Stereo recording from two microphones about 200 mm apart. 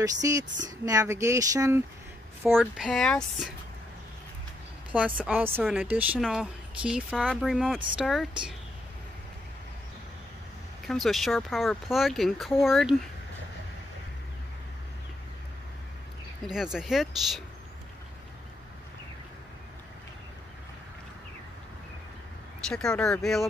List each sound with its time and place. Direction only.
0.0 s speech: 15° right (ahead or behind)
2.5 s a woman's voice: centre (ahead or behind)
4.9 s a woman's voice: 5° right (ahead or behind)
10.9 s a woman's voice: centre (ahead or behind)
16.4 s a woman's voice: centre (ahead or behind)
22.7 s a woman's voice: 5° left (ahead or behind)